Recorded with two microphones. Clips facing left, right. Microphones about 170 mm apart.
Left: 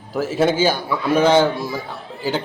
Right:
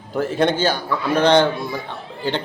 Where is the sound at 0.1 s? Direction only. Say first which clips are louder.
Left 1 dB; 5° left (ahead or behind).